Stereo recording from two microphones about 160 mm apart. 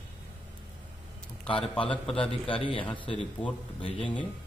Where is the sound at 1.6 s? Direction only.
5° left (ahead or behind).